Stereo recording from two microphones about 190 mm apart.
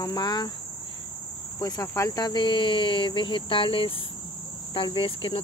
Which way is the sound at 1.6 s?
20° left (ahead or behind).